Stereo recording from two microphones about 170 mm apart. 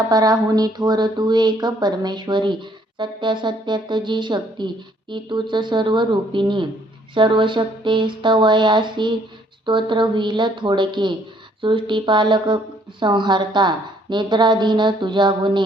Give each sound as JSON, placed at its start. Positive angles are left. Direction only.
{"t": 0.1, "sound": "speech", "side_deg": -20}